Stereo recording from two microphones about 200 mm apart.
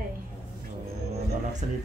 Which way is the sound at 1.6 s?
40° right (ahead or behind).